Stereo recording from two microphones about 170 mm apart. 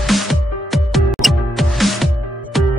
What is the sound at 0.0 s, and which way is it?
Music, centre (ahead or behind).